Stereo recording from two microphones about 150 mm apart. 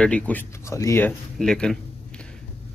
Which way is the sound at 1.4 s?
5° left (ahead or behind).